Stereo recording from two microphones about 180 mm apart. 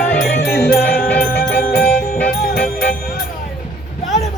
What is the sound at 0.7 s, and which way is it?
Music, 10° left (ahead or behind).